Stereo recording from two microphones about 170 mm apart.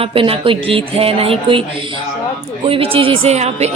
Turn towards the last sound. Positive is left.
turn(degrees=-40)  # may be behind; listen again after turning